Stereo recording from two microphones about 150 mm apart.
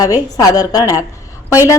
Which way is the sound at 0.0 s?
25° left (ahead or behind).